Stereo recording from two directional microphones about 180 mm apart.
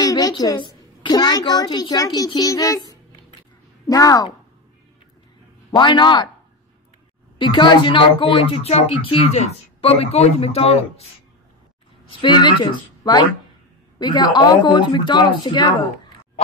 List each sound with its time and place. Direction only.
0.0 s a child's voice: 20° left (ahead or behind)
5.7 s speech: 25° left (ahead or behind)
7.3 s speech: 25° left (ahead or behind)
12.1 s speech: 25° left (ahead or behind)